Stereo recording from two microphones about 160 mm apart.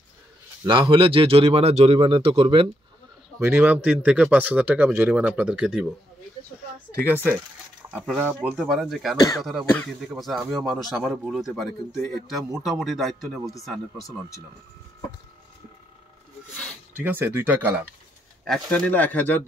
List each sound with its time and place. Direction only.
0.7 s speech: 30° right (ahead or behind)
3.3 s speech: 10° right (ahead or behind)
7.8 s a sound: 20° right (ahead or behind)
8.4 s speech: 5° right (ahead or behind)
16.9 s speech: 10° right (ahead or behind)
18.4 s speech: 5° left (ahead or behind)